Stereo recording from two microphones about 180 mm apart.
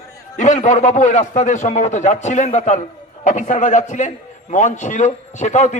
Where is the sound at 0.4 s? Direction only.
45° left (ahead or behind).